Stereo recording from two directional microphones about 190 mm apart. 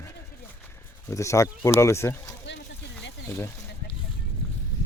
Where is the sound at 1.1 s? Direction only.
15° left (ahead or behind).